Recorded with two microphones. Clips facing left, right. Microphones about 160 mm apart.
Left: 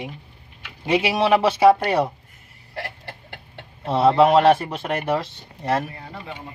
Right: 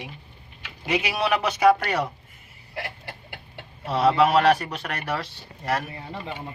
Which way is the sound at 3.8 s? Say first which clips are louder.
Left 4 dB; 25° left (ahead or behind).